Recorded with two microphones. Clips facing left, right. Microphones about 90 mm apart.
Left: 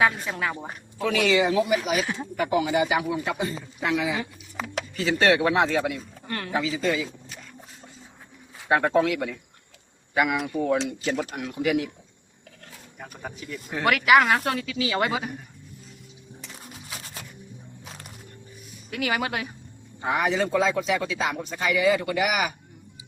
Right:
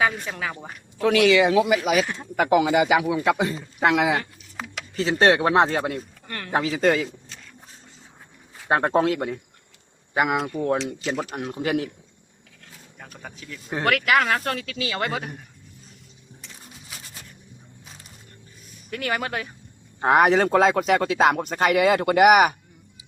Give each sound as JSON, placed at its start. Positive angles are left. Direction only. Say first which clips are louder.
{"t": 0.0, "sound": "speech", "louder": "left 1 dB", "side_deg": 0}
{"t": 0.5, "sound": "speech", "louder": "left 3 dB", "side_deg": 15}
{"t": 1.0, "sound": "speech", "louder": "right 4 dB", "side_deg": -80}
{"t": 4.9, "sound": "speech", "louder": "right 3 dB", "side_deg": -35}
{"t": 6.2, "sound": "speech", "louder": "left 3 dB", "side_deg": 10}
{"t": 6.5, "sound": "speech", "louder": "right 5 dB", "side_deg": -55}
{"t": 8.7, "sound": "speech", "louder": "right 1 dB", "side_deg": -40}
{"t": 13.0, "sound": "speech", "louder": "left 3 dB", "side_deg": 5}
{"t": 17.8, "sound": "music", "louder": "left 5 dB", "side_deg": 65}
{"t": 18.9, "sound": "speech", "louder": "even", "side_deg": 5}
{"t": 20.0, "sound": "speech", "louder": "right 7 dB", "side_deg": -60}